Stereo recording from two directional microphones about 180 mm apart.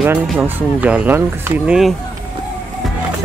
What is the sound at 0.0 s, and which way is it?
Speech, 10° right (ahead or behind).